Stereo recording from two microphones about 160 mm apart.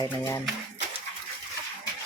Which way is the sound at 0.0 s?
15° left (ahead or behind).